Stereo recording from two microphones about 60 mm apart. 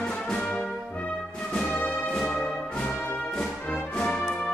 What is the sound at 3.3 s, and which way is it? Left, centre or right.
Music, centre.